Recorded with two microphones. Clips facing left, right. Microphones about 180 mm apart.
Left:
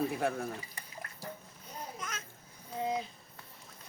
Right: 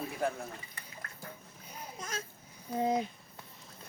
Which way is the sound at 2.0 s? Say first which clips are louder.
Right 3 dB; 30° right (ahead or behind).